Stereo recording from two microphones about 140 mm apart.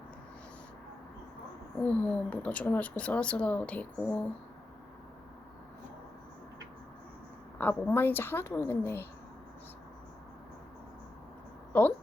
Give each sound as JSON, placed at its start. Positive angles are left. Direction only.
{"t": 1.8, "sound": "speech", "side_deg": 10}
{"t": 7.6, "sound": "speech", "side_deg": 15}
{"t": 11.7, "sound": "speech", "side_deg": 10}